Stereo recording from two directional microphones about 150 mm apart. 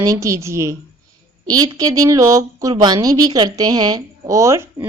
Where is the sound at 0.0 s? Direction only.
20° right (ahead or behind).